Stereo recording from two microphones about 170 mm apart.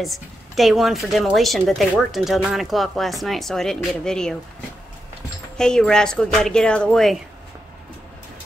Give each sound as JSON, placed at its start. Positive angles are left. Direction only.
{"t": 0.0, "sound": "a woman's voice", "side_deg": 0}
{"t": 5.6, "sound": "a woman's voice", "side_deg": 5}